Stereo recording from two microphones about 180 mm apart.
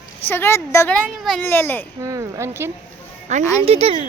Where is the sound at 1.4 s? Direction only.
10° left (ahead or behind).